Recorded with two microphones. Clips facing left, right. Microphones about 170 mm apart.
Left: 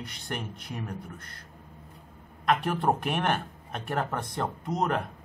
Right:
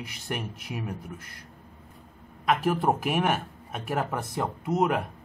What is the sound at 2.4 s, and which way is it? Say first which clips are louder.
Speech: right 1 dB; 5° right (ahead or behind).